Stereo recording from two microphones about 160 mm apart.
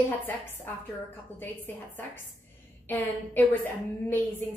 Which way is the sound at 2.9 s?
10° left (ahead or behind).